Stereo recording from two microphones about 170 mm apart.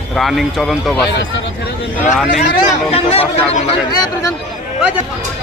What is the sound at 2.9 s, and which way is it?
Speech, 35° left (ahead or behind).